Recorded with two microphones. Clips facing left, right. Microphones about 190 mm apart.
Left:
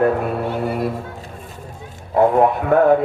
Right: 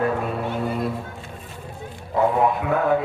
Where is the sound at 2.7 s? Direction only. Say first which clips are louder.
Left 8 dB; 65° left (ahead or behind).